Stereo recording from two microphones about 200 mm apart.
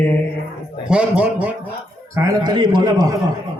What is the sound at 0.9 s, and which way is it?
Speech, 5° right (ahead or behind).